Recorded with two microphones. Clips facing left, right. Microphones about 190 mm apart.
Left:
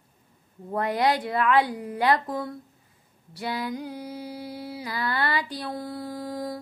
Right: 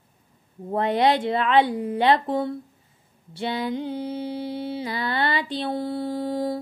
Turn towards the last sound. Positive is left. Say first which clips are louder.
# right 6 dB
turn(degrees=-25)  # may be behind; listen again after turning